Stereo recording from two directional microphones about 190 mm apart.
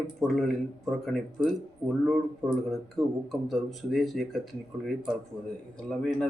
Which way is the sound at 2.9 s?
Centre (ahead or behind).